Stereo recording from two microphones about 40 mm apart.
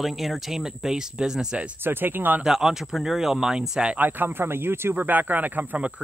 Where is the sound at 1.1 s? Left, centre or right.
Centre.